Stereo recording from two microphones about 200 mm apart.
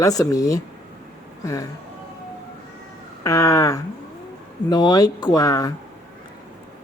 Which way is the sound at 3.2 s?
15° left (ahead or behind).